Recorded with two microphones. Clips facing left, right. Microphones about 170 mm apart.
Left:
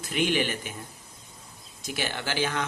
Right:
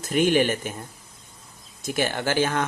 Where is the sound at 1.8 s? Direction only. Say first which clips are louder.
Right 7 dB; 50° right (ahead or behind).